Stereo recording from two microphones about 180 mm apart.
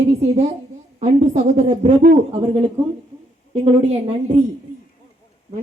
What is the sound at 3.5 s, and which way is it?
Speech, 30° right (ahead or behind).